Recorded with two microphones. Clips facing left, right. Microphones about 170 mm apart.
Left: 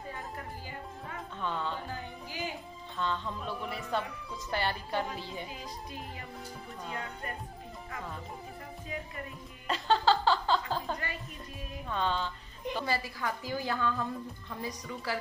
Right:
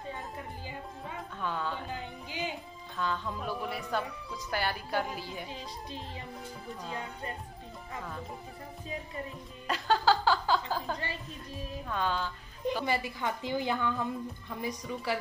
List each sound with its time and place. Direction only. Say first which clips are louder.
1.4 s speech: even; 5° right (ahead or behind)
1.9 s music: right 1 dB; 20° right (ahead or behind)
3.0 s speech: right 1 dB; 5° right (ahead or behind)
5.5 s a woman's voice: right 1 dB; 30° right (ahead or behind)
9.7 s chuckle: even; centre (ahead or behind)
11.9 s speech: even; 5° right (ahead or behind)
12.8 s a woman's voice: right 2 dB; 20° right (ahead or behind)